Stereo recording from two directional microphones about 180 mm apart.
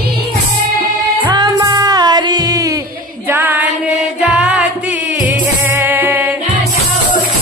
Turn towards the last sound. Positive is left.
turn(degrees=-10)  # may be behind; listen again after turning